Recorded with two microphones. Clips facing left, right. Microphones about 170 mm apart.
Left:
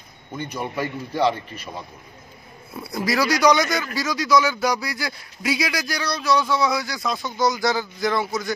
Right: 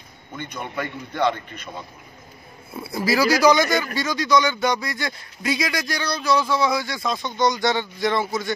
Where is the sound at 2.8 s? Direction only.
5° right (ahead or behind).